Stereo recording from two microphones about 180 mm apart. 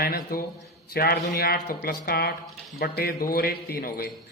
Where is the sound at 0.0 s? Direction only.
55° left (ahead or behind).